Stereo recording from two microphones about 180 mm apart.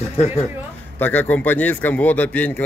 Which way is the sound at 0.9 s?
10° left (ahead or behind).